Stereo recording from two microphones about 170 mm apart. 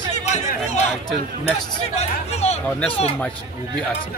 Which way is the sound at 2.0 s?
40° left (ahead or behind).